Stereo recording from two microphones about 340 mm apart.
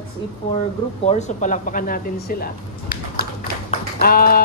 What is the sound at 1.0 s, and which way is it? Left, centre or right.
Speech, centre.